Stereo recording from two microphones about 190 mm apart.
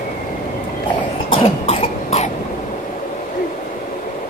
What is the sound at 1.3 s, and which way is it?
Cough, 30° left (ahead or behind).